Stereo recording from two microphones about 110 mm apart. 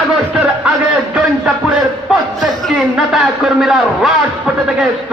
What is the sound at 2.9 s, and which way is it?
A man's voice, 5° right (ahead or behind).